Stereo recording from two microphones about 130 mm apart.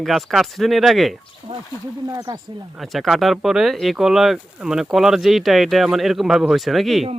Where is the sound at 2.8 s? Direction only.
Centre (ahead or behind).